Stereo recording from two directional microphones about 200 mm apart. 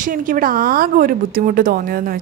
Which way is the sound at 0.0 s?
45° right (ahead or behind).